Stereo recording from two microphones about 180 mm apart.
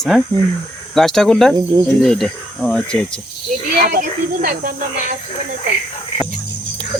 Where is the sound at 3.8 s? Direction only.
55° right (ahead or behind).